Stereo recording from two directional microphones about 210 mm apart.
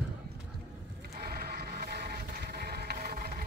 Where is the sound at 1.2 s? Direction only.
45° right (ahead or behind).